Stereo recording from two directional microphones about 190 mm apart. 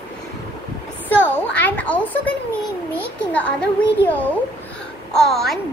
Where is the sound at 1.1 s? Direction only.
10° left (ahead or behind).